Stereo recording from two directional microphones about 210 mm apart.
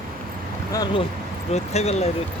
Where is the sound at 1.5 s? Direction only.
30° left (ahead or behind).